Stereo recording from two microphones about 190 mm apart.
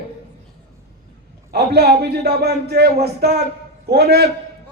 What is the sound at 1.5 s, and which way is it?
A man's voice, 60° right (ahead or behind).